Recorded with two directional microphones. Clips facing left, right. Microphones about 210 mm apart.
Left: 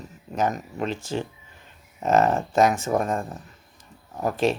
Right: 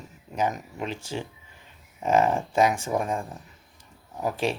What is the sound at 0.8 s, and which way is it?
Speech, 10° right (ahead or behind).